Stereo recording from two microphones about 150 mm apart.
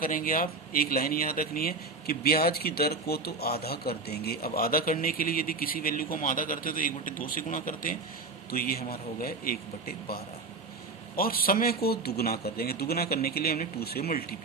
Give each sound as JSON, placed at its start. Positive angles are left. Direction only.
{"t": 0.0, "sound": "speech", "side_deg": 70}
{"t": 8.4, "sound": "speech", "side_deg": 85}
{"t": 11.2, "sound": "speech", "side_deg": 75}